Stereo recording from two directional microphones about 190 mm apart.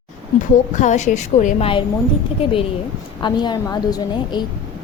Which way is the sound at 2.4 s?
30° left (ahead or behind).